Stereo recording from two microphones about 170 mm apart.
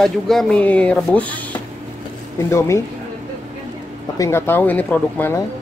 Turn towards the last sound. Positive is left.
turn(degrees=10)  # may be behind; listen again after turning